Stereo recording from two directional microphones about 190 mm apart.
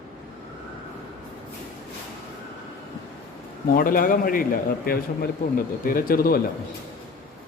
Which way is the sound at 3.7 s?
50° left (ahead or behind).